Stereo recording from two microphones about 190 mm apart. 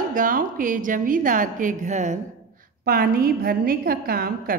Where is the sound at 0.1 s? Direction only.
45° right (ahead or behind).